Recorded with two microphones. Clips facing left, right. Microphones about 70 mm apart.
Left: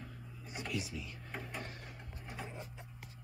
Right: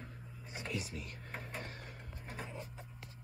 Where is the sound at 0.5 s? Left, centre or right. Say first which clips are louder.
Left 1 dB; right.